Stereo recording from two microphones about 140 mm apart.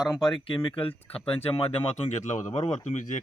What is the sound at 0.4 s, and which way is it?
Speech, 40° left (ahead or behind).